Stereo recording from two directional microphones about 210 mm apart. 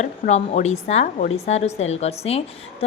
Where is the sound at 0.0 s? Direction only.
35° left (ahead or behind).